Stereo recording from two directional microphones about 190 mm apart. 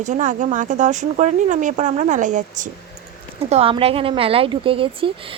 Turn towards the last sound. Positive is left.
turn(degrees=-30)  # may be behind; listen again after turning